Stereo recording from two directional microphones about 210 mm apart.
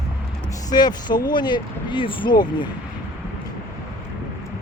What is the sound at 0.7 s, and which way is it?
Speech, 20° left (ahead or behind).